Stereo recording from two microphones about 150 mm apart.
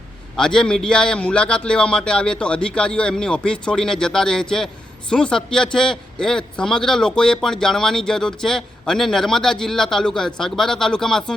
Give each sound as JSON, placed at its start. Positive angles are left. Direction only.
{"t": 0.3, "sound": "a man's voice", "side_deg": 5}